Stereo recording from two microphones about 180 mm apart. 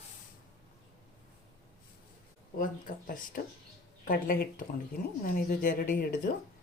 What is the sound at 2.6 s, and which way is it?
Speech, 50° left (ahead or behind).